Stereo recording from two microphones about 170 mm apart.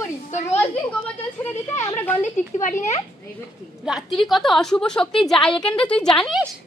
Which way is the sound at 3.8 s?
Centre (ahead or behind).